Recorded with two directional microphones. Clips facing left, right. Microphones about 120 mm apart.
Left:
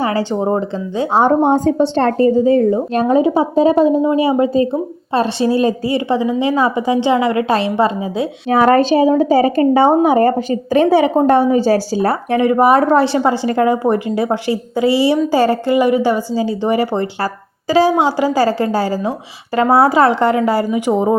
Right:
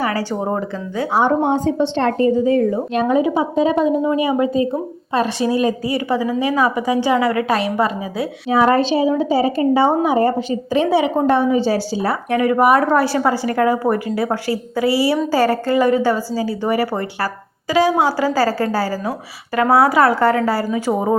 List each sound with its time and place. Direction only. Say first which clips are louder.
0.0 s a woman's voice: left 4 dB; 25° left (ahead or behind)
1.2 s a woman's voice: left 4 dB; 40° left (ahead or behind); by 8.3 s 25° left (ahead or behind)
8.4 s a woman's voice: left 3 dB; 50° left (ahead or behind)
12.3 s a woman's voice: left 2 dB; 25° left (ahead or behind)